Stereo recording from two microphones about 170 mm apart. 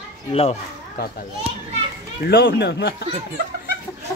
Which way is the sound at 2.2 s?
70° left (ahead or behind).